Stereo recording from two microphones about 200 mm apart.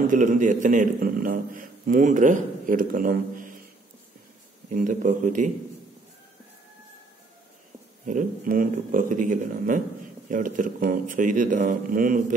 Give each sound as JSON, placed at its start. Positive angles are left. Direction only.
{"t": 0.0, "sound": "a man's voice", "side_deg": -40}
{"t": 4.6, "sound": "a man's voice", "side_deg": -40}
{"t": 8.1, "sound": "a man's voice", "side_deg": -40}